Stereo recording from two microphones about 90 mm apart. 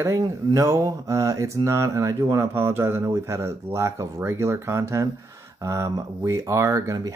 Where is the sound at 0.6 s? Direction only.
35° right (ahead or behind).